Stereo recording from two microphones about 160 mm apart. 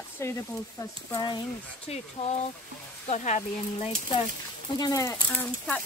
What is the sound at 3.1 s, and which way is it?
Speech, 45° left (ahead or behind).